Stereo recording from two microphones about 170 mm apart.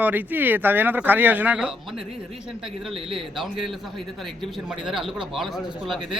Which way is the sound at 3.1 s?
Centre (ahead or behind).